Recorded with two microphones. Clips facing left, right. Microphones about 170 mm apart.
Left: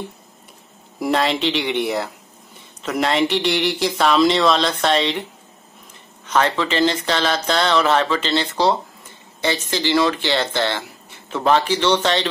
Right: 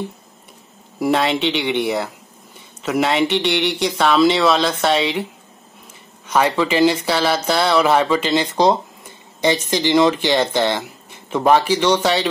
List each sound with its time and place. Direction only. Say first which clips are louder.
0.9 s speech: right 2 dB; centre (ahead or behind)
6.2 s speech: right 2 dB; 10° right (ahead or behind)